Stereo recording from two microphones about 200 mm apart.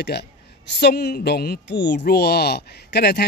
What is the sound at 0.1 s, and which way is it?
A woman's voice, 55° left (ahead or behind).